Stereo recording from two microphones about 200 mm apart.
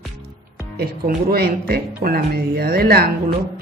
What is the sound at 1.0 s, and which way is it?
Speech, 50° right (ahead or behind).